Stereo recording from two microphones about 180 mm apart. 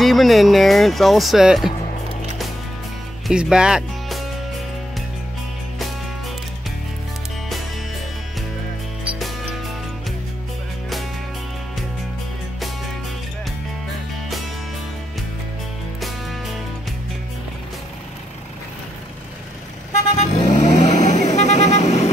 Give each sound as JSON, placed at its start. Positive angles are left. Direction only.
{"t": 0.0, "sound": "speech", "side_deg": 0}
{"t": 3.3, "sound": "speech", "side_deg": -5}
{"t": 16.0, "sound": "music", "side_deg": 0}
{"t": 20.2, "sound": "vehicle", "side_deg": 40}